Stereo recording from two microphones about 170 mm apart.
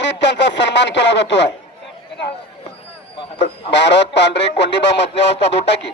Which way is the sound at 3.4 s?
90° left.